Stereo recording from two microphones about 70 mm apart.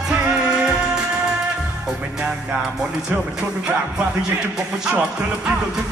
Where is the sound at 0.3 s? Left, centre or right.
Centre.